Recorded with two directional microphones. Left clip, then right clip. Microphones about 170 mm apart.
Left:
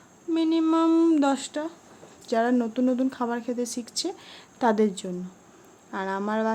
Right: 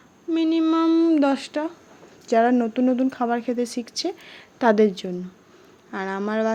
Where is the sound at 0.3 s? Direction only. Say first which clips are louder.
Right 2 dB; 5° right (ahead or behind).